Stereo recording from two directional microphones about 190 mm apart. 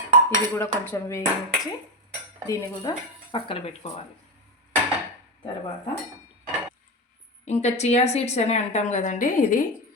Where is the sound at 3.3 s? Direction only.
25° left (ahead or behind).